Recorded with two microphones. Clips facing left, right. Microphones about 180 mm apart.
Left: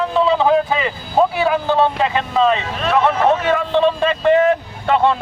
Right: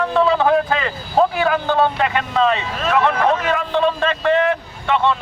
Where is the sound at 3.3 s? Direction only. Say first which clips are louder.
Left 3 dB; 25° left (ahead or behind).